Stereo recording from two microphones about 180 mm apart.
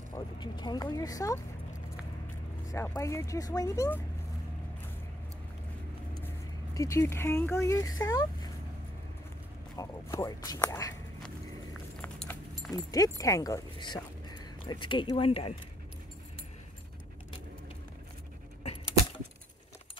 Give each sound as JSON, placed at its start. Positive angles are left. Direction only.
{"t": 0.1, "sound": "speech", "side_deg": 25}
{"t": 2.7, "sound": "speech", "side_deg": 15}
{"t": 6.2, "sound": "speech", "side_deg": 15}
{"t": 9.8, "sound": "speech", "side_deg": 15}
{"t": 12.0, "sound": "keys jangling", "side_deg": 10}
{"t": 12.7, "sound": "speech", "side_deg": 20}